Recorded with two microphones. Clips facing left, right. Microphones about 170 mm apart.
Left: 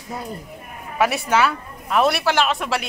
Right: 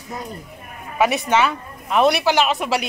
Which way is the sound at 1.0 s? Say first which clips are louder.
Right 1 dB; centre (ahead or behind).